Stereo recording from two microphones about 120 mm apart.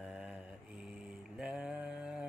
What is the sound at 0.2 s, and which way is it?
Mantra, 10° right (ahead or behind).